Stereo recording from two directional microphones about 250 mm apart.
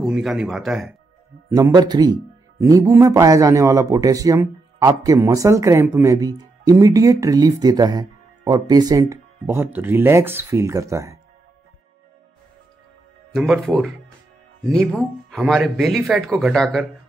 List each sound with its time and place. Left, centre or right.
0.0 s speech: centre
1.5 s a man's voice: centre
13.3 s speech: centre